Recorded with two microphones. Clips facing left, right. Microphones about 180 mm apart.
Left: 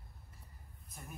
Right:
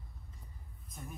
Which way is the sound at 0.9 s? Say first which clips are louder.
Right 4 dB; 5° left (ahead or behind).